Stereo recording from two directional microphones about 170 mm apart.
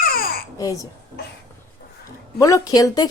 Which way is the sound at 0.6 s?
20° left (ahead or behind).